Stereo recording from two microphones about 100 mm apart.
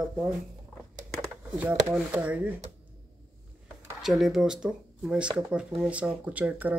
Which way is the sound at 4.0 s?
5° right (ahead or behind).